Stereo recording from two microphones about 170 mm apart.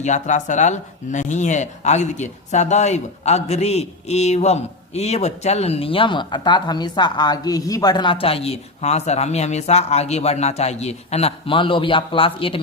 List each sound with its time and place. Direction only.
0.0 s speech: 45° left (ahead or behind)